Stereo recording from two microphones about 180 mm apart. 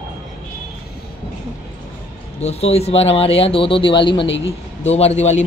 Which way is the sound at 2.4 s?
35° left (ahead or behind).